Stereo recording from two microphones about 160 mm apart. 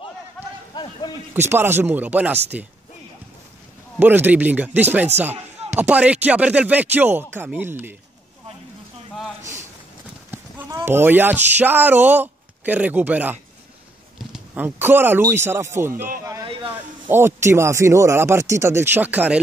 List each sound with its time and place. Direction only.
0.7 s a sound: 25° left (ahead or behind)
1.3 s speech: 15° right (ahead or behind)
4.0 s speech: 10° right (ahead or behind)
9.4 s a sound: 50° right (ahead or behind)
10.9 s speech: 15° right (ahead or behind)
17.1 s speech: 15° right (ahead or behind)